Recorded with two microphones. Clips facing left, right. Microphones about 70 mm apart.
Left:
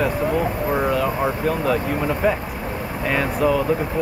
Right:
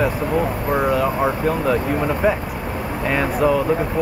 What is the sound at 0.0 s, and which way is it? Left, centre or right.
Speech, centre.